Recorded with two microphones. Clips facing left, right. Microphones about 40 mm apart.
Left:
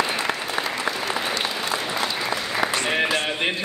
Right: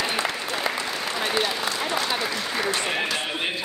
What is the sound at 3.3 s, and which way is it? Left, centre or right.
Music, centre.